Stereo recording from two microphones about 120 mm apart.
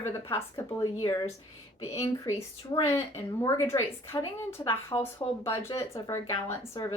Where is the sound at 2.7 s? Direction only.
25° left (ahead or behind).